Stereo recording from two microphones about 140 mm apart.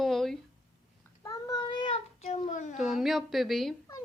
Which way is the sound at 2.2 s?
55° left (ahead or behind).